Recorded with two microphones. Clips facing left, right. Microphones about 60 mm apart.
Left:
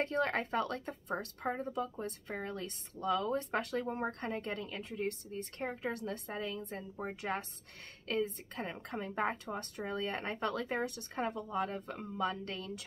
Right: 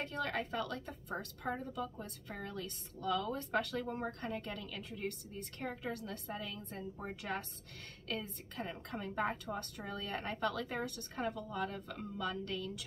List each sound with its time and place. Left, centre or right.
0.0 s a woman's voice: left